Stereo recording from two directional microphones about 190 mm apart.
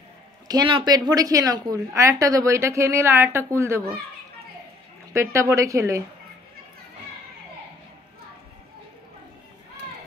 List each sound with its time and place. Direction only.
0.5 s a woman's voice: 25° right (ahead or behind)
5.1 s a woman's voice: 15° right (ahead or behind)